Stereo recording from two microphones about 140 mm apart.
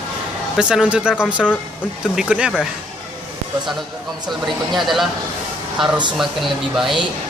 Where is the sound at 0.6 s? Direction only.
5° right (ahead or behind).